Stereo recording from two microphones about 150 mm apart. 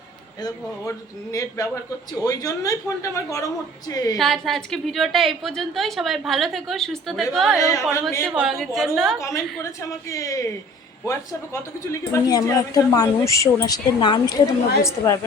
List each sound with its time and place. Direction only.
0.4 s speech: 20° left (ahead or behind)
4.2 s a woman's voice: centre (ahead or behind)
7.6 s speech: 20° left (ahead or behind)
8.2 s a woman's voice: 5° right (ahead or behind)
10.1 s speech: 20° left (ahead or behind)